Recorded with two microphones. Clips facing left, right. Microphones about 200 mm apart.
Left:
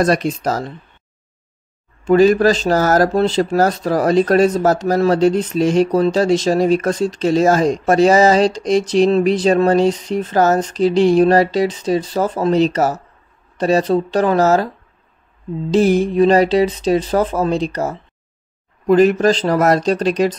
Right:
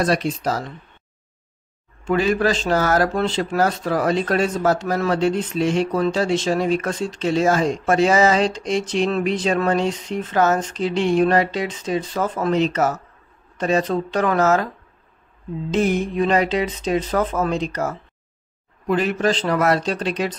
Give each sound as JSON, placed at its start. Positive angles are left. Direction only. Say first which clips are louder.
{"t": 0.0, "sound": "speech", "louder": "left 4 dB", "side_deg": 45}
{"t": 2.0, "sound": "speech", "louder": "left 8 dB", "side_deg": 40}
{"t": 15.7, "sound": "speech", "louder": "left 6 dB", "side_deg": 35}